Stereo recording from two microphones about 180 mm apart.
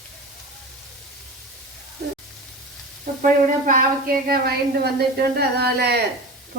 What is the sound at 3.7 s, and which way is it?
Speech, 50° right (ahead or behind).